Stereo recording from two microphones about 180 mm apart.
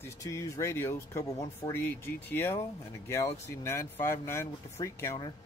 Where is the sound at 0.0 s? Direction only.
15° left (ahead or behind).